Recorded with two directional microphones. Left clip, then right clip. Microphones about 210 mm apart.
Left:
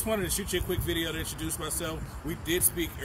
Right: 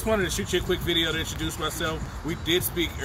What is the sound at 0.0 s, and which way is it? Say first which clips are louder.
Speech: right 5 dB; 10° left (ahead or behind).